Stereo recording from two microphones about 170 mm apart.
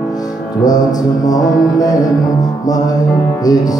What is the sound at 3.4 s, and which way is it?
Music, 20° left (ahead or behind).